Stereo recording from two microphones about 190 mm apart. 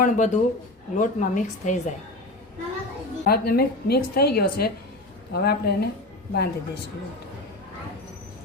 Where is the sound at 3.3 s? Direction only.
55° left (ahead or behind).